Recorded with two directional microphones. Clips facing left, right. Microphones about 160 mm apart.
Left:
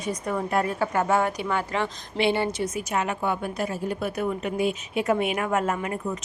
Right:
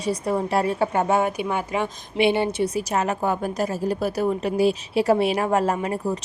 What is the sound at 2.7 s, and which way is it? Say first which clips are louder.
A woman's voice: right 4 dB; 40° right (ahead or behind).